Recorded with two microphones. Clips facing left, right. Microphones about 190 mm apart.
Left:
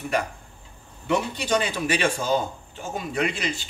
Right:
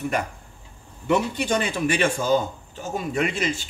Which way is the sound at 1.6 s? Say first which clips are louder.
Right 2 dB; 50° right (ahead or behind).